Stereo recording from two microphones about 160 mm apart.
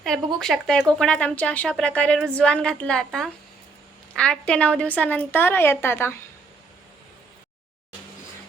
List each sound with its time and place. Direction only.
0.3 s a woman's voice: 5° left (ahead or behind)